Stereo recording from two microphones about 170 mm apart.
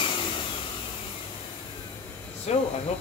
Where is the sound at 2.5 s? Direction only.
40° left (ahead or behind).